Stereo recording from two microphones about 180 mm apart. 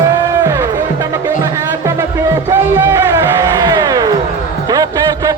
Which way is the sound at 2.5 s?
15° right (ahead or behind).